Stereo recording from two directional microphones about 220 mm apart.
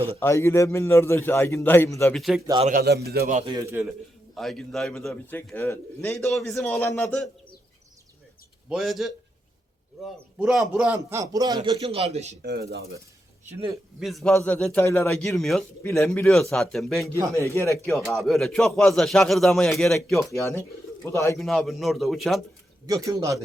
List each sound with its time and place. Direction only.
0.2 s a man's voice: 10° left (ahead or behind)
2.1 s a man's voice: centre (ahead or behind)
2.6 s a man's voice: 45° right (ahead or behind)
3.3 s a man's voice: 20° right (ahead or behind)
4.4 s a man's voice: centre (ahead or behind)
8.7 s a man's voice: centre (ahead or behind)
10.3 s a man's voice: 5° right (ahead or behind); by 12.4 s 30° right (ahead or behind)
12.4 s a man's voice: 50° right (ahead or behind)
14.0 s a man's voice: centre (ahead or behind)
21.3 s a man's voice: centre (ahead or behind)
22.9 s a man's voice: 15° right (ahead or behind)